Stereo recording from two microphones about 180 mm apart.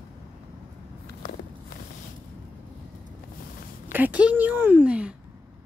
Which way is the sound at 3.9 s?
10° right (ahead or behind).